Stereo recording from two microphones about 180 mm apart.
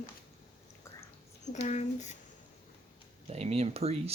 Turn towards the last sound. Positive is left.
turn(degrees=-35)  # may be behind; listen again after turning